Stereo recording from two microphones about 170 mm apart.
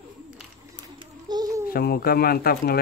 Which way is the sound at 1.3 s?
25° right (ahead or behind).